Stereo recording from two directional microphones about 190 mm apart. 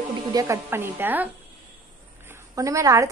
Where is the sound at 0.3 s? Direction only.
15° right (ahead or behind).